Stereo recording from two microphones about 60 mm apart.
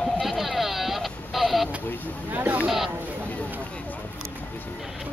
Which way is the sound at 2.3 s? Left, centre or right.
Right.